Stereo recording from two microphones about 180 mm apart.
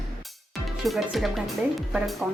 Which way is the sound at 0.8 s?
Centre (ahead or behind).